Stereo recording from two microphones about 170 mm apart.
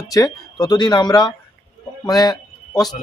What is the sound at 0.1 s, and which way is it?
A man's voice, 20° left (ahead or behind).